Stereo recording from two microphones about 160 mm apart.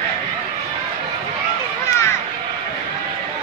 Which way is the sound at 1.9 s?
15° left (ahead or behind).